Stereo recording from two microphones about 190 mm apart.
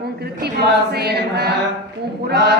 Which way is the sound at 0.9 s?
60° right (ahead or behind).